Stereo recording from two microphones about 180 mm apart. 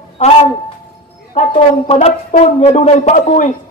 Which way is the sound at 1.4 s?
40° left (ahead or behind).